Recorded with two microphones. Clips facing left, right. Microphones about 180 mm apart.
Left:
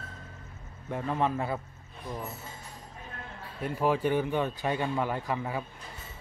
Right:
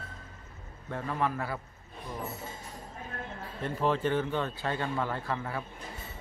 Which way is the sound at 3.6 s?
10° left (ahead or behind).